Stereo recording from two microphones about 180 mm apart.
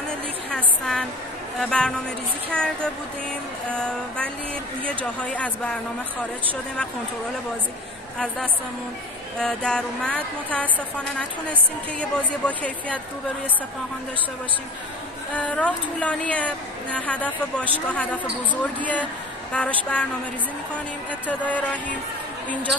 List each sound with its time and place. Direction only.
0.5 s a sound: 5° left (ahead or behind)
4.8 s a woman's voice: 5° left (ahead or behind)
9.4 s a sound: 5° left (ahead or behind)
12.0 s a woman's voice: 10° left (ahead or behind)
15.3 s a woman's voice: 5° left (ahead or behind)
21.3 s a woman's voice: 10° left (ahead or behind)